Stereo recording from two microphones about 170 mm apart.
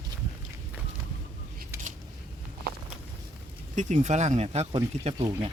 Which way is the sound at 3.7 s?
45° right (ahead or behind).